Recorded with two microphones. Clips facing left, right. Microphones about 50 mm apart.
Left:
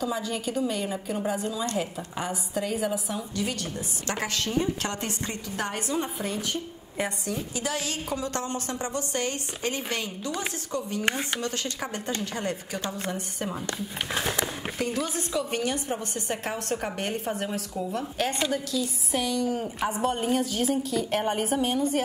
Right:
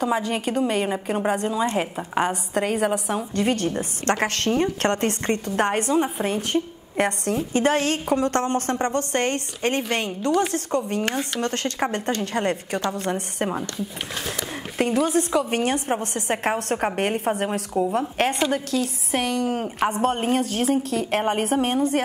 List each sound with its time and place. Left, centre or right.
0.0 s a woman's voice: right
0.9 s a woman's voice: right
3.2 s a woman's voice: right
7.0 s a woman's voice: right
7.3 s a woman's voice: right
11.1 s speech: centre
11.4 s a woman's voice: right
14.1 s speech: centre
14.8 s a woman's voice: right
18.1 s a woman's voice: right
20.4 s a woman's voice: right